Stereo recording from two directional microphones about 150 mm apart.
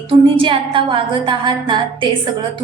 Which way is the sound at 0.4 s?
35° right (ahead or behind).